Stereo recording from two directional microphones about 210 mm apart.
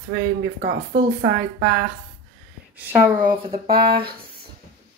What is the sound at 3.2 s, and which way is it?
Speech, 40° right (ahead or behind).